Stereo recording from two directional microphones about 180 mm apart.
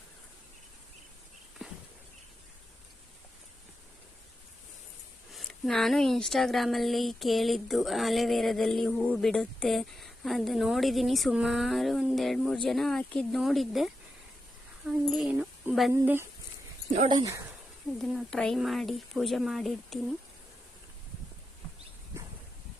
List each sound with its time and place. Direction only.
5.3 s speech: centre (ahead or behind)
15.9 s speech: 15° right (ahead or behind)
18.1 s speech: centre (ahead or behind)